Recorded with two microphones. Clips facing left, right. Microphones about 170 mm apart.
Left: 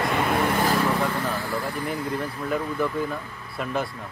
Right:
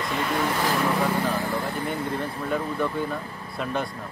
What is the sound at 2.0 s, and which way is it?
Speech, 30° right (ahead or behind).